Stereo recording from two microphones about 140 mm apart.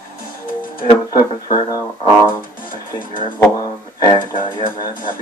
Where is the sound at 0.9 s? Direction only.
35° left (ahead or behind).